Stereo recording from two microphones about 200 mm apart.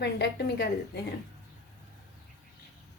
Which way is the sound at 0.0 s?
55° left (ahead or behind).